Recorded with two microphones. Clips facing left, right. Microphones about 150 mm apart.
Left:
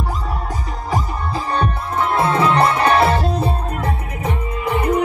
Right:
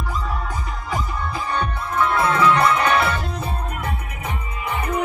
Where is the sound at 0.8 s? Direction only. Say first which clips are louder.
Left 4 dB; 35° left (ahead or behind).